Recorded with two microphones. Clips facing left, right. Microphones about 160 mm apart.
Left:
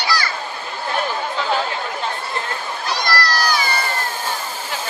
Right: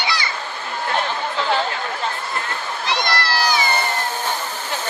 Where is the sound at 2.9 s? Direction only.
20° right (ahead or behind).